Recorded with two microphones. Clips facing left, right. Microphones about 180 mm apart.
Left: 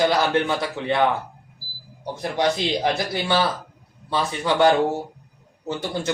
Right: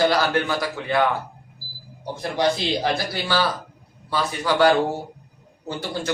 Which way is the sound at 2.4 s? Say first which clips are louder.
Even; 20° left (ahead or behind).